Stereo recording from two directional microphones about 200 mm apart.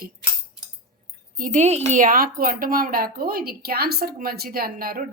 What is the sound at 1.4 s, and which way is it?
A woman's voice, 40° right (ahead or behind).